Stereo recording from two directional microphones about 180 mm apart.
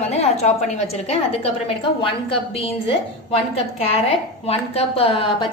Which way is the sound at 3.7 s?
35° left (ahead or behind).